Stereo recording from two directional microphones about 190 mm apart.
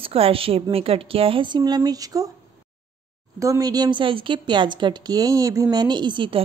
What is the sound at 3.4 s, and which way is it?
A woman's voice, 20° right (ahead or behind).